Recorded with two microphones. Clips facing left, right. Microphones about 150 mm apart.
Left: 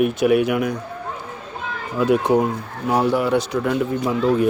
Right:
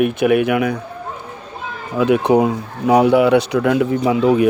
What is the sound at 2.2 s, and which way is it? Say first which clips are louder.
Speech: right 4 dB; 85° right.